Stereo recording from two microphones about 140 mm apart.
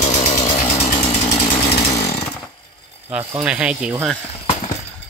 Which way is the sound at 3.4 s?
10° right (ahead or behind).